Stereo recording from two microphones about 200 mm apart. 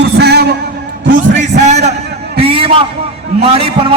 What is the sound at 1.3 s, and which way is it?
A man's voice, 35° right (ahead or behind).